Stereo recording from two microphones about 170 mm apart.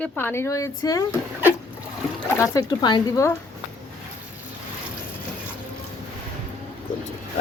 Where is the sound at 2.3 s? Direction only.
20° left (ahead or behind).